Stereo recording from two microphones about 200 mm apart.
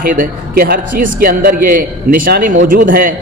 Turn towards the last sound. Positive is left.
turn(degrees=-45)  # may be behind; listen again after turning